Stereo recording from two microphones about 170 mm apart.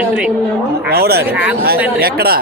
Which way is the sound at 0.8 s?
70° right (ahead or behind).